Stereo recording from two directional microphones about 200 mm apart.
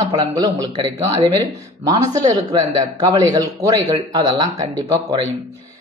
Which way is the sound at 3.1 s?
20° right (ahead or behind).